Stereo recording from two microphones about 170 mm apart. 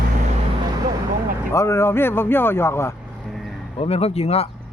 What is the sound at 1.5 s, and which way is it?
A man's voice, 15° left (ahead or behind).